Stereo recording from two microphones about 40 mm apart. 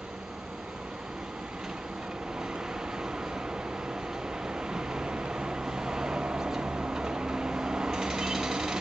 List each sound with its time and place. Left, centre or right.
4.6 s vehicle: centre